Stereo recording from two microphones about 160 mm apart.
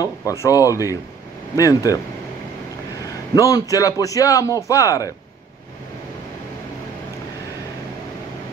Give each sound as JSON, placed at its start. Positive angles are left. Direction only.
{"t": 0.0, "sound": "a man's voice", "side_deg": 20}
{"t": 3.3, "sound": "a man's voice", "side_deg": 20}